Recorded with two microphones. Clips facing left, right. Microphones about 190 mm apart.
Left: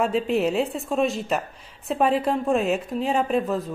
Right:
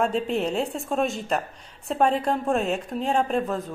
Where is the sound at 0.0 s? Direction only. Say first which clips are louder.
Left 2 dB; 5° left (ahead or behind).